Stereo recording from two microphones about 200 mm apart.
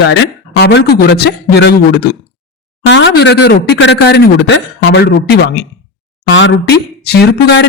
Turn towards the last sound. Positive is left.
turn(degrees=55)  # may be behind; listen again after turning